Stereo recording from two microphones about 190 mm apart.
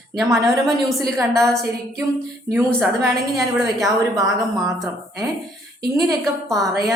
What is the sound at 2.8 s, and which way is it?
Speech, 15° right (ahead or behind).